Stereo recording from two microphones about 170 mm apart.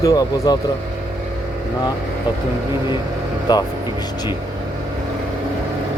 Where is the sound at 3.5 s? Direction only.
25° left (ahead or behind).